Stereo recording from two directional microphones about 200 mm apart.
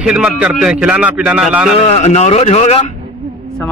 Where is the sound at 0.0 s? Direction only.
5° right (ahead or behind).